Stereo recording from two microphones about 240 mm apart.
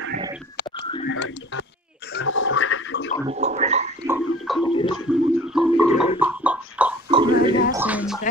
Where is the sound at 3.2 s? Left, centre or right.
Right.